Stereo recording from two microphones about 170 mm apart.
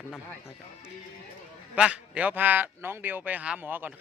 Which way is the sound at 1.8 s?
5° right (ahead or behind).